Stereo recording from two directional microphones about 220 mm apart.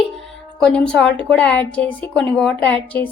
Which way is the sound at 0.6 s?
5° left (ahead or behind).